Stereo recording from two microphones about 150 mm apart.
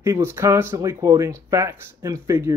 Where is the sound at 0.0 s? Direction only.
20° right (ahead or behind).